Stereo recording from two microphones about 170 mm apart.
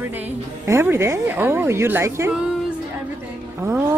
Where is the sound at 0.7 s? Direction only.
15° right (ahead or behind).